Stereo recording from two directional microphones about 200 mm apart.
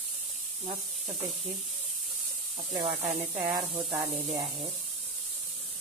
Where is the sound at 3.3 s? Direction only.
20° right (ahead or behind).